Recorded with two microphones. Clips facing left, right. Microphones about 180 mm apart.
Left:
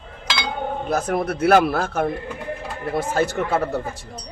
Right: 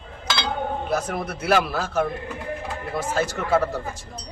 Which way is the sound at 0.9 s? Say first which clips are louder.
Left 4 dB; 45° left (ahead or behind).